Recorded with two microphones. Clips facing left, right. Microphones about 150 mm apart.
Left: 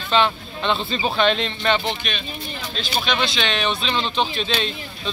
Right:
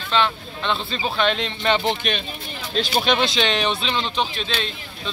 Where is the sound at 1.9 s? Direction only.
50° right (ahead or behind); by 3.8 s 30° right (ahead or behind).